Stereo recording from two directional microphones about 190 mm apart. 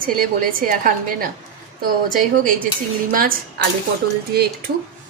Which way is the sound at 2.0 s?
45° right (ahead or behind).